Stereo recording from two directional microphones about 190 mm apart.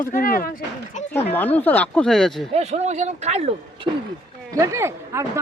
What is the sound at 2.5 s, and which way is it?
Speech, 35° right (ahead or behind).